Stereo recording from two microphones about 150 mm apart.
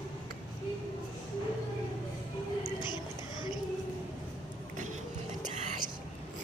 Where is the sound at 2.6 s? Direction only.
30° left (ahead or behind).